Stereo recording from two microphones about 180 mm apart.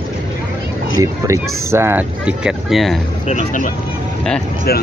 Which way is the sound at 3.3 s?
45° left (ahead or behind).